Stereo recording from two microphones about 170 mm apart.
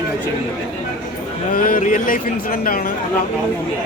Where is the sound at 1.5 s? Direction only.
55° left (ahead or behind).